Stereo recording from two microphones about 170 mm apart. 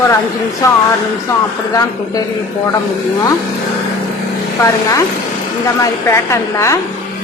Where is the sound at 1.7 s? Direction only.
20° left (ahead or behind).